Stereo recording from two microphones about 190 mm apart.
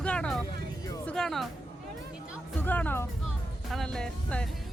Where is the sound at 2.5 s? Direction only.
10° left (ahead or behind).